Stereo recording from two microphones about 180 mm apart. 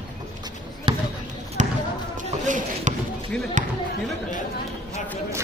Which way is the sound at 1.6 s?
40° right (ahead or behind).